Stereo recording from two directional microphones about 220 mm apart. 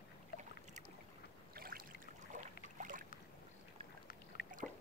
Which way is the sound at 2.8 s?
35° right (ahead or behind).